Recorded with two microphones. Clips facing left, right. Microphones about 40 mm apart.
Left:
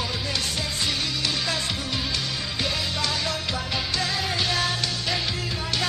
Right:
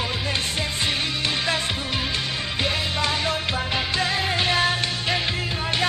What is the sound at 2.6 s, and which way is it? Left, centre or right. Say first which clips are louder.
Music: right 3 dB; right.